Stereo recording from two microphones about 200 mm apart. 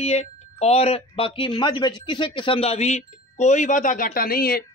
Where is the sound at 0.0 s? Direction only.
35° left (ahead or behind).